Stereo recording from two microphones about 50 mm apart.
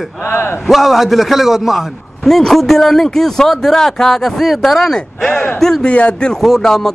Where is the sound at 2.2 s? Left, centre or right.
Centre.